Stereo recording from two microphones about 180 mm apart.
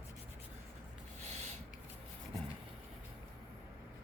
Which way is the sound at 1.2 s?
40° right (ahead or behind).